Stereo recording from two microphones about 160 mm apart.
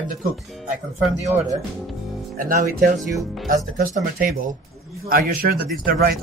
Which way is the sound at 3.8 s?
65° right (ahead or behind).